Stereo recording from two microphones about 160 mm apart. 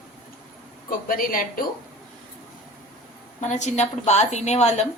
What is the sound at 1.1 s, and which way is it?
Speech, 65° left (ahead or behind).